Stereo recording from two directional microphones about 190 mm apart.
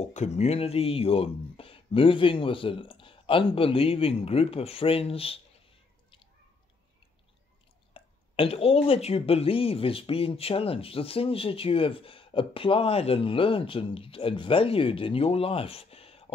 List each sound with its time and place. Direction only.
0.1 s speech: 35° left (ahead or behind)
7.9 s speech: 30° left (ahead or behind)